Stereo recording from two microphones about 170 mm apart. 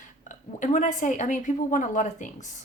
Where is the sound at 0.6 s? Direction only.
45° left (ahead or behind).